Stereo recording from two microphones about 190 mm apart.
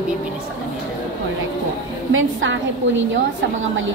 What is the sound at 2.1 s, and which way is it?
Speech, 90° right.